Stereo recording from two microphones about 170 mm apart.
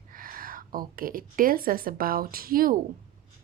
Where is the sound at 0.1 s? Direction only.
55° right (ahead or behind).